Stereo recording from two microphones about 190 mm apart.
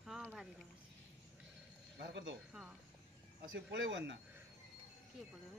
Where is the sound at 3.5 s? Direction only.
80° right.